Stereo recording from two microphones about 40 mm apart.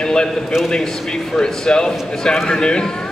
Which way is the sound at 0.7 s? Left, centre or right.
Centre.